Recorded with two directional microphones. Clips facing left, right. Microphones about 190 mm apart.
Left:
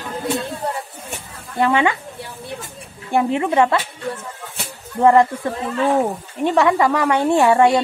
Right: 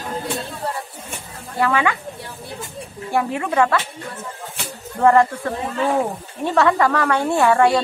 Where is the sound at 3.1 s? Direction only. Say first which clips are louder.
Left 3 dB; 25° left (ahead or behind).